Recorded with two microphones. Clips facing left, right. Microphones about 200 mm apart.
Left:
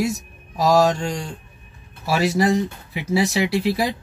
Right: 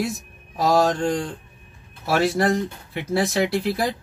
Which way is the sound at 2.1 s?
Centre (ahead or behind).